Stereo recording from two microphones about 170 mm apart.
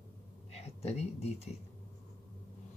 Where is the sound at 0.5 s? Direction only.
40° left (ahead or behind).